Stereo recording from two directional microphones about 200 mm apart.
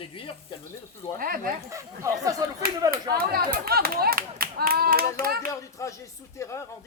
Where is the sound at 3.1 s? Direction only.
50° right (ahead or behind).